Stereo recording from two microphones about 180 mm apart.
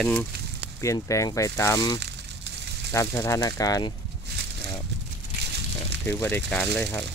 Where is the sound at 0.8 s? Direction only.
15° left (ahead or behind).